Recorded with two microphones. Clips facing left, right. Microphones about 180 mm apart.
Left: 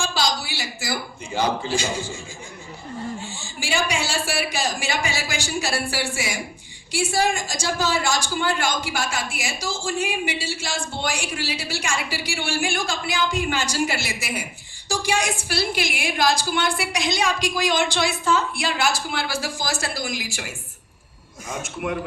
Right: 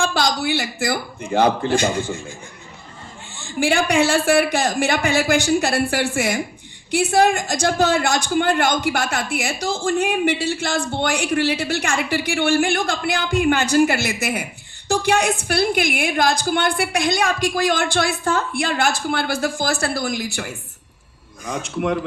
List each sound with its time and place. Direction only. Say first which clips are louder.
0.0 s a man's voice: right 5 dB; 55° right (ahead or behind)
3.3 s a woman's voice: right 9 dB; 60° right (ahead or behind)